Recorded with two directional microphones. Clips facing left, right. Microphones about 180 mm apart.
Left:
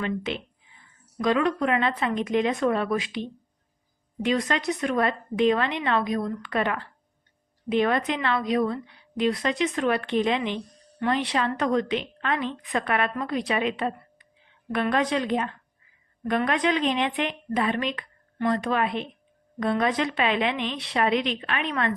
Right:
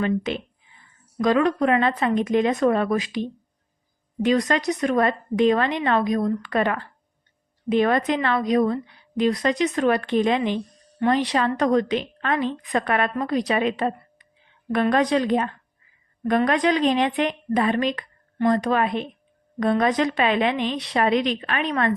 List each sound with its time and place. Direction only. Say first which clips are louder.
0.0 s a woman's voice: right 5 dB; 40° right (ahead or behind)